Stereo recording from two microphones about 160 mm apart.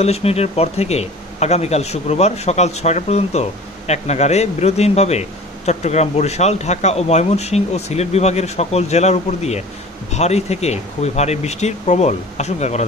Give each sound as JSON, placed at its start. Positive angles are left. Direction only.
{"t": 0.0, "sound": "speech", "side_deg": 40}